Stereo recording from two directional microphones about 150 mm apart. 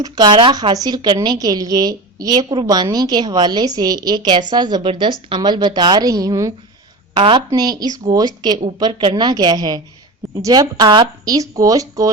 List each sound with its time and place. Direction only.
0.0 s a woman's voice: 30° right (ahead or behind)
7.1 s a woman's voice: 35° right (ahead or behind)